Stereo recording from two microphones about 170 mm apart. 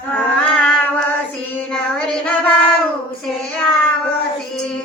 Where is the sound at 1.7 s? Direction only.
5° left (ahead or behind).